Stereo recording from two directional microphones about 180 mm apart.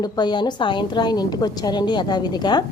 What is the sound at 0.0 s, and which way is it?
A woman's voice, 25° left (ahead or behind).